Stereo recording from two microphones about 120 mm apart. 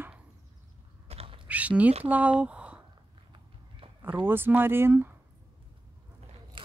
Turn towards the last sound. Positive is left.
turn(degrees=-20)  # may be behind; listen again after turning